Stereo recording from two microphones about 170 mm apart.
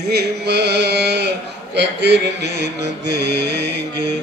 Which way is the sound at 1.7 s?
90° right.